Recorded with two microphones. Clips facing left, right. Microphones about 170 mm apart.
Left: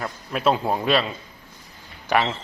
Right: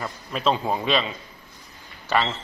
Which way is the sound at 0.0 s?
5° left (ahead or behind).